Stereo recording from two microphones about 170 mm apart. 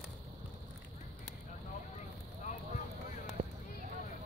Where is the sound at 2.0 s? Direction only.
45° left (ahead or behind).